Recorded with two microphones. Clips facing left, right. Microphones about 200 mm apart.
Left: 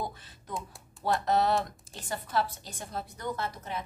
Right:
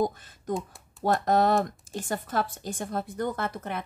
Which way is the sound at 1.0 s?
50° right (ahead or behind).